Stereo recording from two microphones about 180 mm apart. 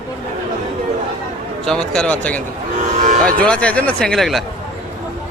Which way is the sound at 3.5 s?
5° left (ahead or behind).